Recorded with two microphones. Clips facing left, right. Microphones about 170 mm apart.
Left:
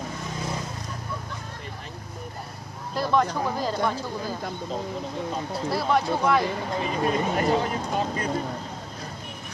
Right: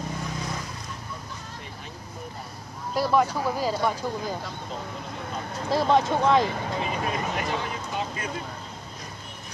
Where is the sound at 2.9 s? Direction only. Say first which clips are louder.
Right 1 dB; 10° right (ahead or behind).